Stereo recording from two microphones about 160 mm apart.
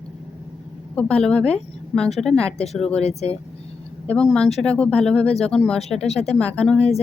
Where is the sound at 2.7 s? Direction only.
5° left (ahead or behind).